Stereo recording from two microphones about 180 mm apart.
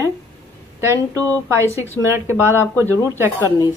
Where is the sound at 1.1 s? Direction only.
15° right (ahead or behind).